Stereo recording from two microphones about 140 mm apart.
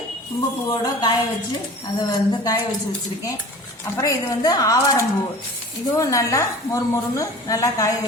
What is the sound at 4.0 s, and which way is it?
A woman's voice, 25° left (ahead or behind).